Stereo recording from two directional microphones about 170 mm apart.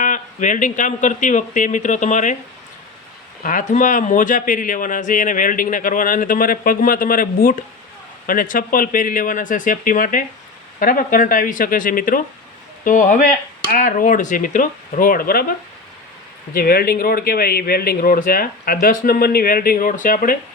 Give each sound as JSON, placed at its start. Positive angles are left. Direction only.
{"t": 0.0, "sound": "speech", "side_deg": 50}
{"t": 3.4, "sound": "speech", "side_deg": 50}
{"t": 16.6, "sound": "speech", "side_deg": 65}